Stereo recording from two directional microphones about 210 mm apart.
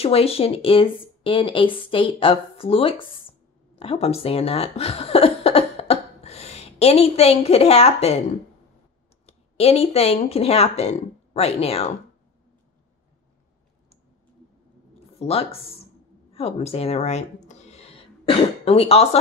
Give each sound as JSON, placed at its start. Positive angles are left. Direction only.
{"t": 0.0, "sound": "speech", "side_deg": 30}
{"t": 9.2, "sound": "speech", "side_deg": 30}
{"t": 15.1, "sound": "speech", "side_deg": 30}
{"t": 16.3, "sound": "a sound", "side_deg": 30}